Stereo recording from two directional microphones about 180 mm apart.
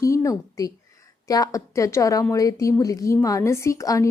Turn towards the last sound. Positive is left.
turn(degrees=15)  # may be behind; listen again after turning